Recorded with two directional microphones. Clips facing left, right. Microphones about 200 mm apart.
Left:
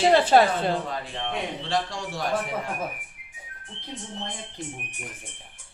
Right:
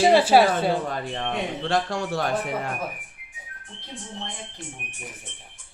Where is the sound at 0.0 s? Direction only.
10° right (ahead or behind).